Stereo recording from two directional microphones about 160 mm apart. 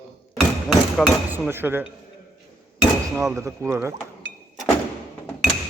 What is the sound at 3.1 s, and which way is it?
Speech, 20° right (ahead or behind).